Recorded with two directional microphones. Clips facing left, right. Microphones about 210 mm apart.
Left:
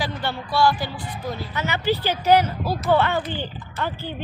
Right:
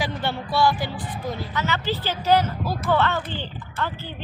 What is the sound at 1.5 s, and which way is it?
A woman's voice, 15° left (ahead or behind).